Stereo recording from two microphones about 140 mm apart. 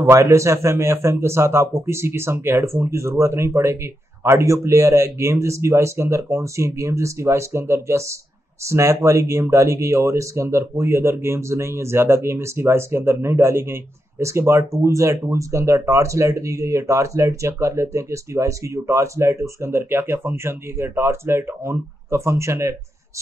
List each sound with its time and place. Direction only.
0.1 s speech: 20° right (ahead or behind)